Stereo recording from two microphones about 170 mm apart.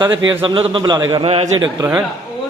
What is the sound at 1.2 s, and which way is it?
Speech, 35° right (ahead or behind).